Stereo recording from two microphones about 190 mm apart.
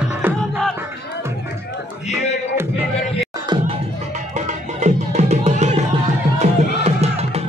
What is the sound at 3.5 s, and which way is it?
Music, 25° right (ahead or behind).